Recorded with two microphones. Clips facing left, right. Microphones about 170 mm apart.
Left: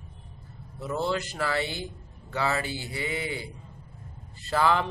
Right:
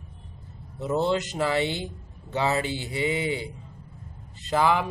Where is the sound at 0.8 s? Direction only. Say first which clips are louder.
Right 4 dB; 20° right (ahead or behind).